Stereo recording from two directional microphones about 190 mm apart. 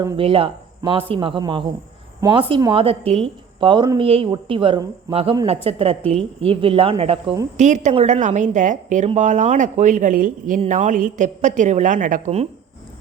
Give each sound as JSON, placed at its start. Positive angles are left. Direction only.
{"t": 0.0, "sound": "a woman's voice", "side_deg": -30}